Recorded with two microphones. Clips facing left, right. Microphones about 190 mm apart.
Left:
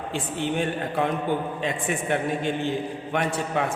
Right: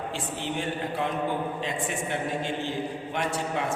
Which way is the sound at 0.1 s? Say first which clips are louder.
Left 5 dB; 55° left (ahead or behind).